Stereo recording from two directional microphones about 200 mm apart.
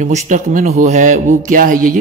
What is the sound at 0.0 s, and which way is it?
A man's voice, 35° right (ahead or behind).